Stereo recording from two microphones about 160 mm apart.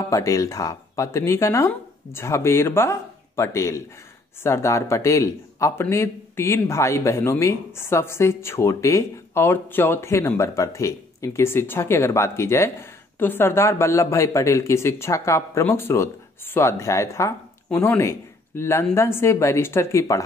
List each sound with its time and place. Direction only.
0.1 s speech: 20° left (ahead or behind)